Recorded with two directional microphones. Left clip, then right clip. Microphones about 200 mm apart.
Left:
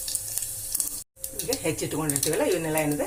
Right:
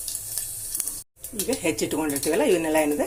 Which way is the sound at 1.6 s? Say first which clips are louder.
Right 5 dB; 40° right (ahead or behind).